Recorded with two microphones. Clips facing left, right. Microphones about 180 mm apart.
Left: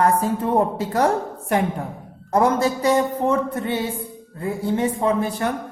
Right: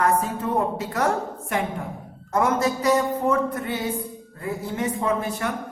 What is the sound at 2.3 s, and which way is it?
A woman's voice, 30° left (ahead or behind).